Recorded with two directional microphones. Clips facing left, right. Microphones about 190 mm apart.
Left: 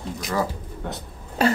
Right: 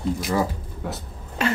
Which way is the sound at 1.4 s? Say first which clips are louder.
Left 4 dB; 35° left (ahead or behind).